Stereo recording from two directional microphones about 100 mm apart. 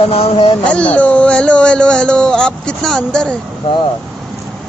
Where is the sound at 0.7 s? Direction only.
15° left (ahead or behind).